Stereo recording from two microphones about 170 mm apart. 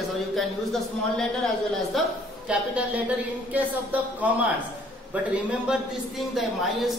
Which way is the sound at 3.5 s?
10° right (ahead or behind).